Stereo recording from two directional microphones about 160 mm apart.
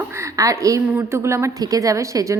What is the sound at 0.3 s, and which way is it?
A woman's voice, 20° right (ahead or behind).